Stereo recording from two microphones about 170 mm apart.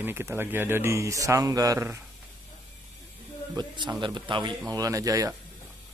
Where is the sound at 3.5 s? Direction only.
25° right (ahead or behind).